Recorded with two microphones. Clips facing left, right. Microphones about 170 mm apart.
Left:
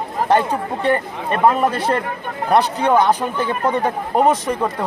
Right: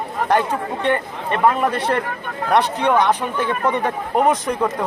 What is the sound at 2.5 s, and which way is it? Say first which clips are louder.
Speech: left 1 dB; 5° left (ahead or behind).